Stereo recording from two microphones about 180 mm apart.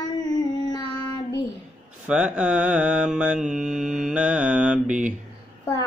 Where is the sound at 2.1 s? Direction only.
5° right (ahead or behind).